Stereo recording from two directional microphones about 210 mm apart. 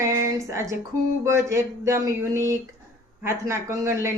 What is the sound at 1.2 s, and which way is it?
Speech, 15° right (ahead or behind).